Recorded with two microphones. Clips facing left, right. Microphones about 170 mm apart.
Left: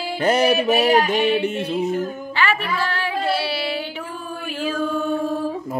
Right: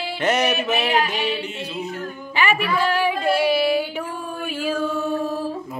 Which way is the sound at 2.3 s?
15° right (ahead or behind).